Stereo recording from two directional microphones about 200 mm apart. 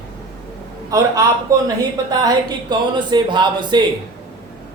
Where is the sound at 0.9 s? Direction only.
15° right (ahead or behind).